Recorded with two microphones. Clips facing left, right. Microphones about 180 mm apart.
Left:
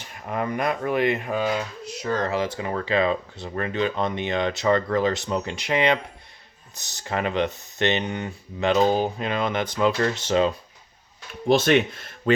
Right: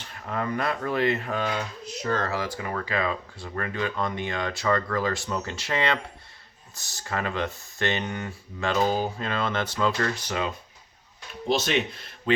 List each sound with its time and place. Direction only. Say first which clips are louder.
0.0 s speech: left 2 dB; 15° left (ahead or behind)
11.4 s speech: left 7 dB; 55° left (ahead or behind)